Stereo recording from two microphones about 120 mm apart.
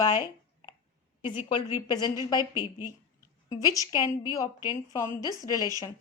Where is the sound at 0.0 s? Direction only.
35° left (ahead or behind).